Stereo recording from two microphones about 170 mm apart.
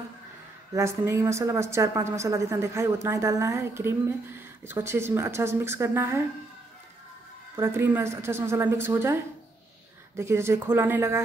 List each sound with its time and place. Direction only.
0.7 s a woman's voice: 15° right (ahead or behind)
7.5 s a woman's voice: 15° right (ahead or behind)